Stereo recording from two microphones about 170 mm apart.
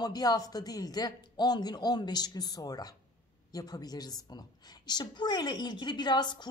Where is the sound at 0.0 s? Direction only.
25° left (ahead or behind).